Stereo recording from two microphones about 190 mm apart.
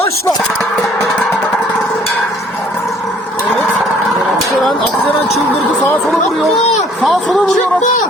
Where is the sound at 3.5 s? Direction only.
Centre (ahead or behind).